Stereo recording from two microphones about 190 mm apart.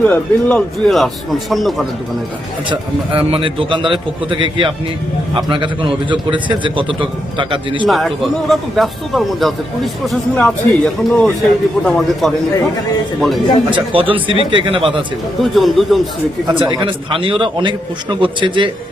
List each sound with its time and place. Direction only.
0.0 s speech: 5° left (ahead or behind)
2.6 s a man's voice: 25° right (ahead or behind)
7.9 s speech: centre (ahead or behind)
13.7 s a man's voice: 30° right (ahead or behind)
15.5 s speech: centre (ahead or behind)
16.8 s a man's voice: 25° right (ahead or behind)